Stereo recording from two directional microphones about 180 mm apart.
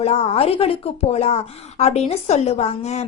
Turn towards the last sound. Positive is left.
turn(degrees=40)  # may be behind; listen again after turning